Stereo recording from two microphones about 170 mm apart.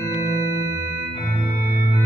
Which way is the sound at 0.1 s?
20° right (ahead or behind).